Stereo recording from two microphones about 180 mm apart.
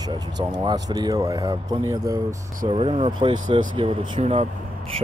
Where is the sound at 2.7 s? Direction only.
35° right (ahead or behind).